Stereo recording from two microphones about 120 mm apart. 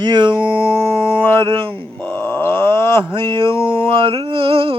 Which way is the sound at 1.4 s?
40° right (ahead or behind).